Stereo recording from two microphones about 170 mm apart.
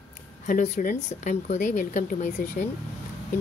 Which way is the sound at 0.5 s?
50° left (ahead or behind).